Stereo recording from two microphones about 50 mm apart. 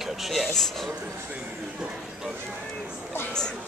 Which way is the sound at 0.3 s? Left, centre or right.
Centre.